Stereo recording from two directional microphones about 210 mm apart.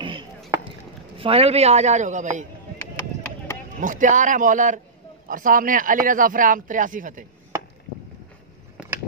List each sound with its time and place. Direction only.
0.0 s chop: 25° right (ahead or behind)
1.1 s speech: 25° right (ahead or behind)
3.8 s speech: 40° right (ahead or behind)